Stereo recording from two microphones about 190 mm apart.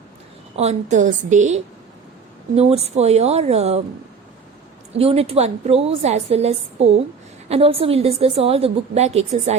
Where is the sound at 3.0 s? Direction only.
35° right (ahead or behind).